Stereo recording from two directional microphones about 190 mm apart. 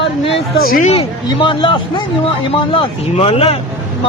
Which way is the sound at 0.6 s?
50° left (ahead or behind).